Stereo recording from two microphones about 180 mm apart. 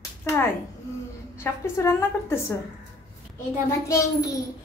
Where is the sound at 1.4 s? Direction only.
15° left (ahead or behind).